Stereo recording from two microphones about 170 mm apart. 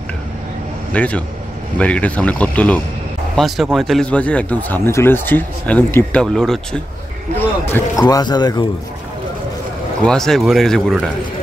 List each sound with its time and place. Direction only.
0.9 s speech: 10° left (ahead or behind)
7.7 s speech: 20° left (ahead or behind)
10.0 s speech: 5° left (ahead or behind)